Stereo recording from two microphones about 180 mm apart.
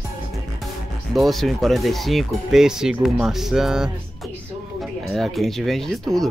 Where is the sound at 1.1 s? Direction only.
Centre (ahead or behind).